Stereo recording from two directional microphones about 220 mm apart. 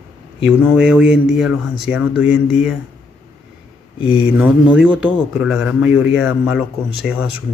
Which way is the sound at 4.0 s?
25° left (ahead or behind).